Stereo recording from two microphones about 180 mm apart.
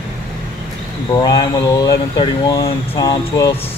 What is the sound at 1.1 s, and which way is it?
Speech, 20° left (ahead or behind).